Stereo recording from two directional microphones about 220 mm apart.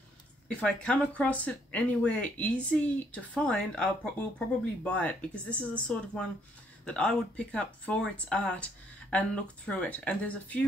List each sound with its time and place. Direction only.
0.6 s speech: 5° left (ahead or behind)